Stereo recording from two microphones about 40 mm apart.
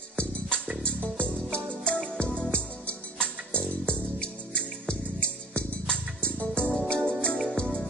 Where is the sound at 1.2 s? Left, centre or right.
Left.